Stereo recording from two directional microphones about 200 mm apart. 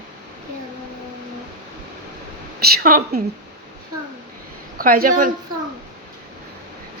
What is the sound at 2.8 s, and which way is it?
Speech, 45° right (ahead or behind).